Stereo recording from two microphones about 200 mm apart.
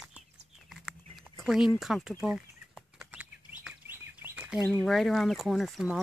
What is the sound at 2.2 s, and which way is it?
Bird, 5° right (ahead or behind).